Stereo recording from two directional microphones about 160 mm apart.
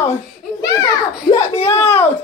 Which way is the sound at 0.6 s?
25° left (ahead or behind).